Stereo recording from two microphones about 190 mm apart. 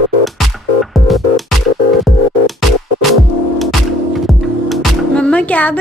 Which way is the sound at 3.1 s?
Centre (ahead or behind).